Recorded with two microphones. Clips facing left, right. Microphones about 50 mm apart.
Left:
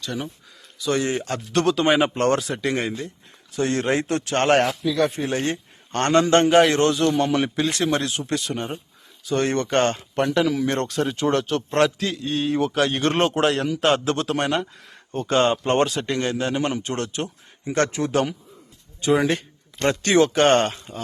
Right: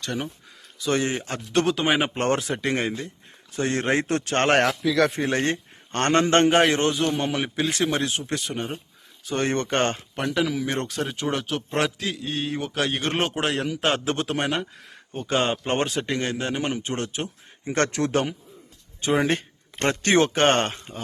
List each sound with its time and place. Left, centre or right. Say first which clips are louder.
0.0 s speech: even; right
0.8 s a man's voice: left 1 dB; right
1.1 s speech: left 1 dB; centre
2.1 s a man's voice: left 3 dB; right
4.8 s a man's voice: even; right
5.1 s a man's voice: right 1 dB; right
6.7 s a man's voice: left 3 dB; right
7.6 s a man's voice: left 2 dB; centre
10.3 s a man's voice: left 2 dB; centre
14.0 s speech: left 2 dB; centre
17.7 s a man's voice: left 2 dB; right
19.0 s a man's voice: left 2 dB; right